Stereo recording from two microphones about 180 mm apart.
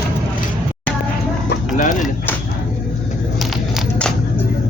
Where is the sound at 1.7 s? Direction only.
50° left (ahead or behind).